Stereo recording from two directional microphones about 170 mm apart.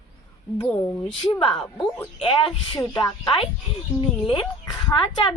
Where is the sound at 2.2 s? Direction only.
30° left (ahead or behind).